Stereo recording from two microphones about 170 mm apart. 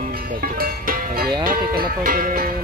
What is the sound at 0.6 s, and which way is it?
Music, 60° right (ahead or behind).